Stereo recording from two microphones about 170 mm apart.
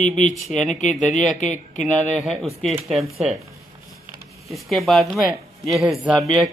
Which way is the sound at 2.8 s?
Centre (ahead or behind).